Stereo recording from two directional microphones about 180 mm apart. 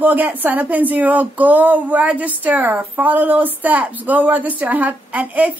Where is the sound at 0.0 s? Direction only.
10° right (ahead or behind).